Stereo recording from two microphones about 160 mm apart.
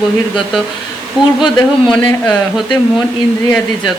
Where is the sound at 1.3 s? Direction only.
Centre (ahead or behind).